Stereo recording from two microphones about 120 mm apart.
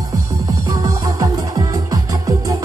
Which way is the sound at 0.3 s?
25° right (ahead or behind).